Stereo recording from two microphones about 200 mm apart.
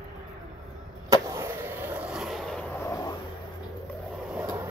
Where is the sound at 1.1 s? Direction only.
15° right (ahead or behind); by 3.1 s 15° left (ahead or behind).